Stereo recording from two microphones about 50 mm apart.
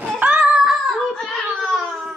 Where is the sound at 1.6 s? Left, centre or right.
Centre.